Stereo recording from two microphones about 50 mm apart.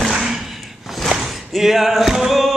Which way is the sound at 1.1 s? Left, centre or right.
Centre.